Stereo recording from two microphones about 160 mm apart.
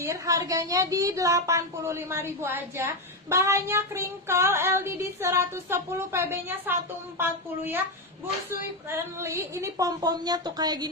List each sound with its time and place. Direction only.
0.0 s a woman's voice: 20° right (ahead or behind)